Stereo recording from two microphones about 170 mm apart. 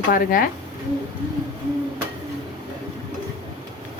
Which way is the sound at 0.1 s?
55° left (ahead or behind).